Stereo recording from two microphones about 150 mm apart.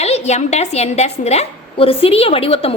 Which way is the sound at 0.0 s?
45° left (ahead or behind).